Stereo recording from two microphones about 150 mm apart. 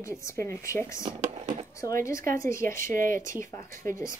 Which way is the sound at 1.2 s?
50° right (ahead or behind).